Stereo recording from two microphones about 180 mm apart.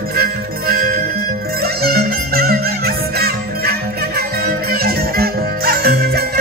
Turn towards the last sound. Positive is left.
turn(degrees=-60)  # may be behind; listen again after turning